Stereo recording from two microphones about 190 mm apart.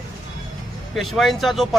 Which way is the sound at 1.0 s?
Centre (ahead or behind).